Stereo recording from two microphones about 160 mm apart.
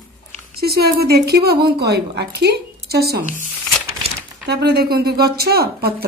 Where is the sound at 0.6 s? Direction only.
80° right.